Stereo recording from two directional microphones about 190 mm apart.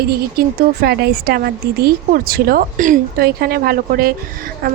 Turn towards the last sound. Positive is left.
turn(degrees=-50)  # may be behind; listen again after turning